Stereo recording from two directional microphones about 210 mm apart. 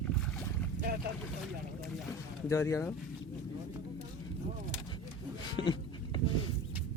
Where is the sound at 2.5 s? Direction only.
15° left (ahead or behind).